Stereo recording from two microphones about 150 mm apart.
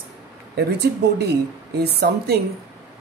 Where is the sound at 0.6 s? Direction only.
90° right.